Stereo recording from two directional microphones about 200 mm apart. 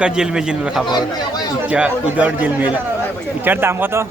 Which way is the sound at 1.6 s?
5° right (ahead or behind).